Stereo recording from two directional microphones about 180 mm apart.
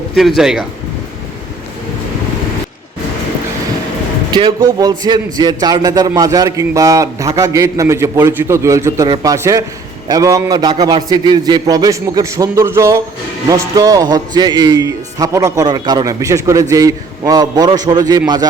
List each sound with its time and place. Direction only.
0.2 s speech: centre (ahead or behind)
4.3 s speech: 25° right (ahead or behind)